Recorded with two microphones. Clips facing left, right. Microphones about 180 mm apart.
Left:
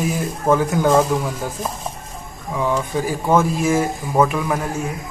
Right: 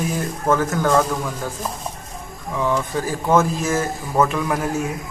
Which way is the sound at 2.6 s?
15° left (ahead or behind).